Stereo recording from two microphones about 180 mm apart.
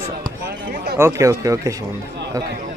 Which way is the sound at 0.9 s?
15° right (ahead or behind).